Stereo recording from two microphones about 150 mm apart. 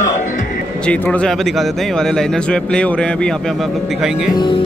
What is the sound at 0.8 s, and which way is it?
Speech, 10° left (ahead or behind).